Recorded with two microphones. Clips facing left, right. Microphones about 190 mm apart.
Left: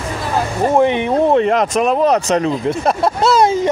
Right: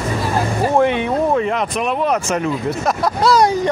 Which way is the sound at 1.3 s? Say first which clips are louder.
Left 5 dB; 40° left (ahead or behind).